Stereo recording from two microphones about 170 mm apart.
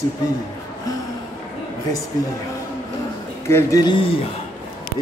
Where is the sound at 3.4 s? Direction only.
20° left (ahead or behind).